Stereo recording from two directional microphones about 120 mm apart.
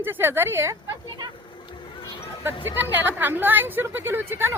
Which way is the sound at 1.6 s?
45° left (ahead or behind).